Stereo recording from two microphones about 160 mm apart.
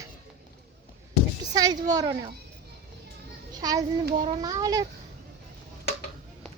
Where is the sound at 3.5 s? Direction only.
25° right (ahead or behind).